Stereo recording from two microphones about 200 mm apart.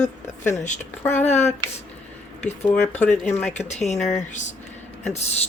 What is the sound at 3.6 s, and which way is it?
Speech, 35° left (ahead or behind).